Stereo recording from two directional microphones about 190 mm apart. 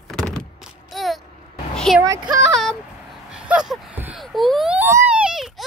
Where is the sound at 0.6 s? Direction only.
Centre (ahead or behind).